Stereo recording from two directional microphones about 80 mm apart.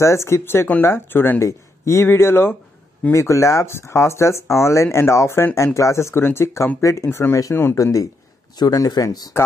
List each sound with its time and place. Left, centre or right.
0.0 s speech: left